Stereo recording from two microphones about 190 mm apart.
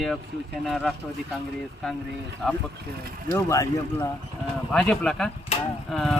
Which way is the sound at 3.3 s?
15° left (ahead or behind).